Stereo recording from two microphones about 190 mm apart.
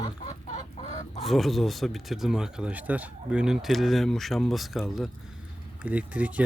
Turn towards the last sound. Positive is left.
turn(degrees=-5)  # may be behind; listen again after turning